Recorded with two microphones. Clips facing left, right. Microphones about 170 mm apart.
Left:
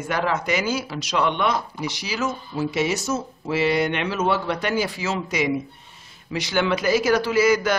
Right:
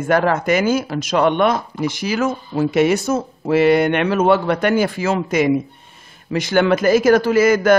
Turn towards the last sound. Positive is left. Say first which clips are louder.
# right 5 dB
turn(degrees=-50)  # may be behind; listen again after turning